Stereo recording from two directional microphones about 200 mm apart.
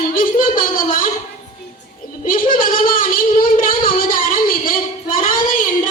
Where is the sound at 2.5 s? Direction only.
45° left (ahead or behind).